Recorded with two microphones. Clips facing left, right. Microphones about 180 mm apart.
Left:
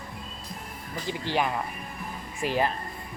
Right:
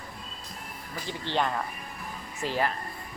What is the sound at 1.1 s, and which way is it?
Speech, 10° left (ahead or behind).